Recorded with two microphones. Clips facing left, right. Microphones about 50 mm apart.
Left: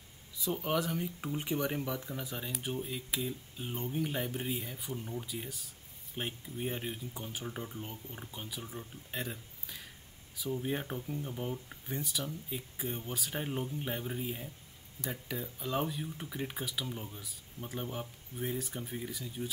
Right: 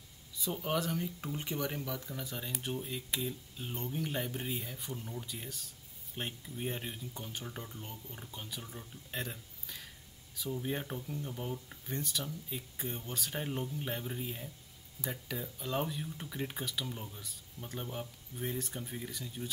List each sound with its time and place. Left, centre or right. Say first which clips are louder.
0.4 s speech: left 2 dB; centre